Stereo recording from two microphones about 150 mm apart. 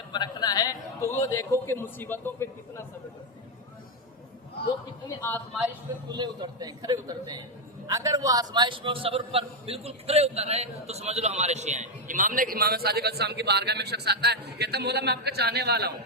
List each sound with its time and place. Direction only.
0.1 s a sound: 30° left (ahead or behind)
1.3 s a man's voice: 20° left (ahead or behind)
5.0 s a man's voice: 15° left (ahead or behind)
6.1 s a man's voice: 30° right (ahead or behind); by 15.9 s 90° right